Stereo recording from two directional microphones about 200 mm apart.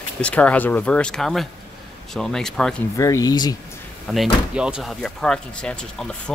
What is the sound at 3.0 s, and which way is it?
Speech, 15° left (ahead or behind).